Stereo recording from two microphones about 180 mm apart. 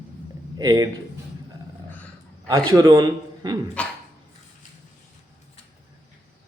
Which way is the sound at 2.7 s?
25° right (ahead or behind).